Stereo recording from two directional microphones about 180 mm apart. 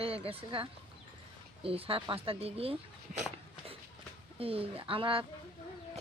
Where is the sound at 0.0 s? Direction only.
30° right (ahead or behind).